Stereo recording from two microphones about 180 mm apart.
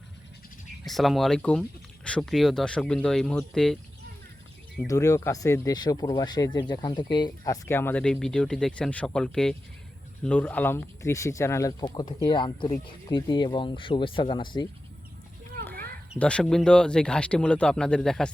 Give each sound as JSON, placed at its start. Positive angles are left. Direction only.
{"t": 0.9, "sound": "speech", "side_deg": 0}
{"t": 4.9, "sound": "speech", "side_deg": 20}
{"t": 16.1, "sound": "speech", "side_deg": 5}